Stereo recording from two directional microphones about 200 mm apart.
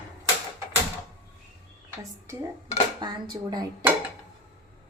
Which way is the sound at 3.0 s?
20° right (ahead or behind).